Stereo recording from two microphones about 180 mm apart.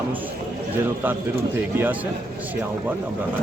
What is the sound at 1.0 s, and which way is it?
Speech, 10° right (ahead or behind).